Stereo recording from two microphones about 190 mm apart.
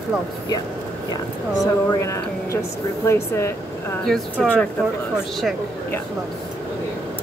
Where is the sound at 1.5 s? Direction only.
20° left (ahead or behind).